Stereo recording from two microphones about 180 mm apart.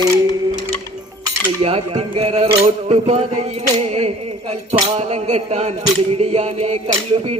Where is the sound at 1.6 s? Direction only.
35° right (ahead or behind).